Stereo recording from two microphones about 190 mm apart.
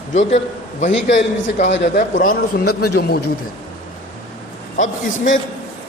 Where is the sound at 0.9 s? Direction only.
70° left (ahead or behind).